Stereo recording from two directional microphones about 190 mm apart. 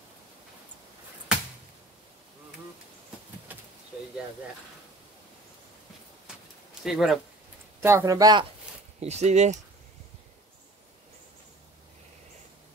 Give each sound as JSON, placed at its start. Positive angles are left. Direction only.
{"t": 3.5, "sound": "a sound", "side_deg": -10}
{"t": 6.8, "sound": "speech", "side_deg": 0}
{"t": 7.8, "sound": "speech", "side_deg": -15}
{"t": 9.0, "sound": "speech", "side_deg": -35}